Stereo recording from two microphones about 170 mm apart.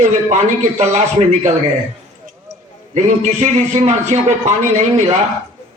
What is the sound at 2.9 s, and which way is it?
A man's voice, 40° right (ahead or behind).